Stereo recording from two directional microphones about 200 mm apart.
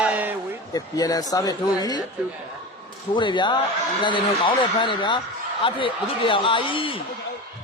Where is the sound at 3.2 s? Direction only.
25° left (ahead or behind).